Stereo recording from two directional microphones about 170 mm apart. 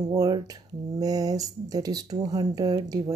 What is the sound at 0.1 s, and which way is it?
Speech, 20° right (ahead or behind).